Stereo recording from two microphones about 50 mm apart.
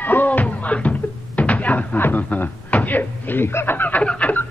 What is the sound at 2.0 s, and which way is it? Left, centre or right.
A man's voice, left.